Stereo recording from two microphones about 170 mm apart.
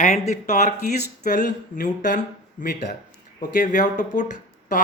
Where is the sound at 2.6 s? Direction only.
65° left (ahead or behind).